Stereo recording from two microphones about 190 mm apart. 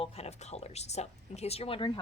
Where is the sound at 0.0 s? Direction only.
35° left (ahead or behind).